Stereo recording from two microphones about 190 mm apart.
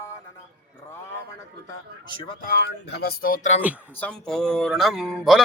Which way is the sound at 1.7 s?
25° left (ahead or behind).